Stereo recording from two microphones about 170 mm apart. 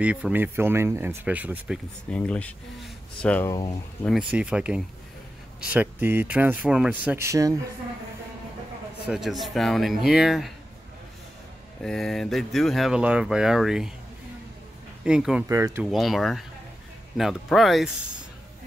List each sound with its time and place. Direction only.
0.0 s speech: 5° right (ahead or behind)
2.0 s speech: 5° left (ahead or behind)
4.3 s speech: 5° right (ahead or behind)
9.0 s speech: centre (ahead or behind)
11.8 s speech: centre (ahead or behind)
15.0 s speech: 5° right (ahead or behind)
15.4 s speech: 15° right (ahead or behind)
15.8 s speech: centre (ahead or behind)